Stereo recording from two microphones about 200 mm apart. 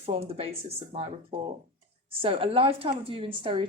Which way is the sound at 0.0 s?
30° right (ahead or behind).